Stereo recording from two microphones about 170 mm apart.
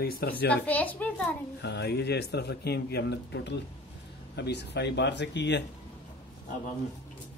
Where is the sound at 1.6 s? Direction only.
80° left.